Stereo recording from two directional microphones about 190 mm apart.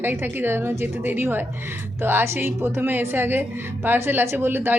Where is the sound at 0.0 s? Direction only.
10° right (ahead or behind).